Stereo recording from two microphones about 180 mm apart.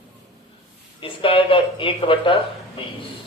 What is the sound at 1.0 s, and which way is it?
Speech, 30° left (ahead or behind).